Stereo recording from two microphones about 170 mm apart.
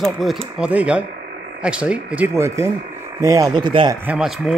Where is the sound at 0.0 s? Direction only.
Centre (ahead or behind); by 3.9 s 30° right (ahead or behind).